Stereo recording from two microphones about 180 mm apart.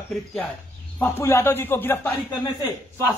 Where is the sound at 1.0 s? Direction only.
10° left (ahead or behind).